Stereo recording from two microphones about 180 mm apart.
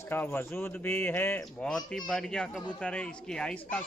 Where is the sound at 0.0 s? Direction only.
10° left (ahead or behind).